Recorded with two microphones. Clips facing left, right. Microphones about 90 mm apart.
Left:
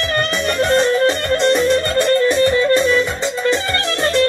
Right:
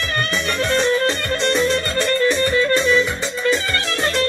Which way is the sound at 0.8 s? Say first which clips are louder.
Left 3 dB; 20° left (ahead or behind).